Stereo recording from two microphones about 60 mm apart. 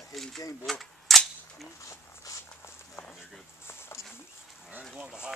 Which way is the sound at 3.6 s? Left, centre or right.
Left.